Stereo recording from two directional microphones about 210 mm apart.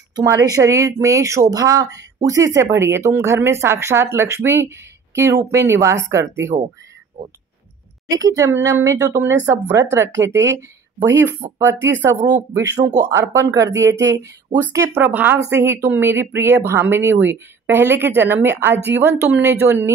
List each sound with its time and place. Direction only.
0.1 s speech: 15° right (ahead or behind)
8.1 s speech: 15° right (ahead or behind)